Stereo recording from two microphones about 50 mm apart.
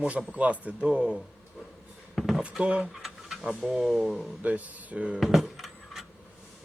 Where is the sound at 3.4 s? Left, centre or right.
Centre.